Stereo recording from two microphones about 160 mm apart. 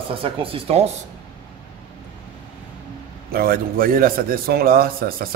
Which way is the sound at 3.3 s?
70° right (ahead or behind).